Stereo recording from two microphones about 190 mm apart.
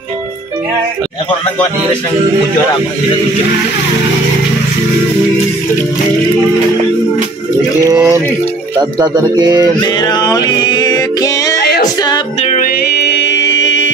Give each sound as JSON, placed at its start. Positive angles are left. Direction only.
{"t": 7.8, "sound": "speech", "side_deg": -20}
{"t": 9.8, "sound": "music", "side_deg": 20}
{"t": 12.4, "sound": "music", "side_deg": 35}
{"t": 12.6, "sound": "music", "side_deg": 55}